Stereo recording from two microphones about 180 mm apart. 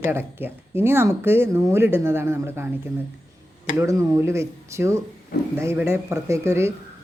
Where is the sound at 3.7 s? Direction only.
15° right (ahead or behind).